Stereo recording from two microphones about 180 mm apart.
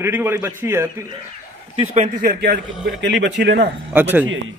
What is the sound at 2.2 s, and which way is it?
A man's voice, 60° right (ahead or behind).